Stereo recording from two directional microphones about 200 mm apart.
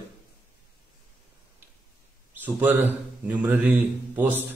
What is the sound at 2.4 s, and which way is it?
A man's voice, 10° right (ahead or behind).